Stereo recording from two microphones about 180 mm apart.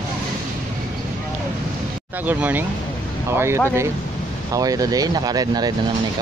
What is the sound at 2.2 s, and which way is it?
Speech, 10° right (ahead or behind).